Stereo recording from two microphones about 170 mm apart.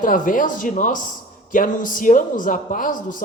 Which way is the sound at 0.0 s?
50° left (ahead or behind).